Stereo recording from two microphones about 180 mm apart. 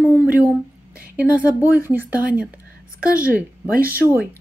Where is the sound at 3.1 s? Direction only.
50° right (ahead or behind).